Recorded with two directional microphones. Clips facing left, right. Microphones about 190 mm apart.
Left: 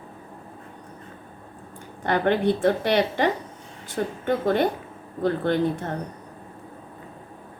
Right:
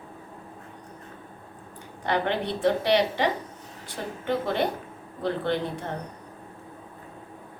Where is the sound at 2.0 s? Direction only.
50° left (ahead or behind).